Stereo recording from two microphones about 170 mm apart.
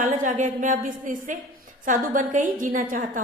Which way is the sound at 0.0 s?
50° right (ahead or behind).